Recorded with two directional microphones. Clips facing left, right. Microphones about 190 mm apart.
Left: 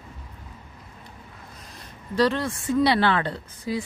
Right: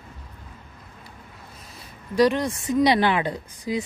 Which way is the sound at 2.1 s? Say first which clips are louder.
Right 3 dB; 15° right (ahead or behind).